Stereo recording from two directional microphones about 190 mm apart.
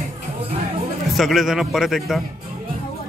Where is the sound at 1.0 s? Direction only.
Centre (ahead or behind).